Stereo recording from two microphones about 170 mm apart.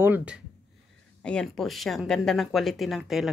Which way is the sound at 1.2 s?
5° left (ahead or behind).